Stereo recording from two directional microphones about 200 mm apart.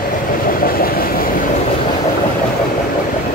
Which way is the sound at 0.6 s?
45° left (ahead or behind).